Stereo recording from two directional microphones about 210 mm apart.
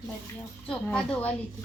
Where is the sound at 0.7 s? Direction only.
5° left (ahead or behind).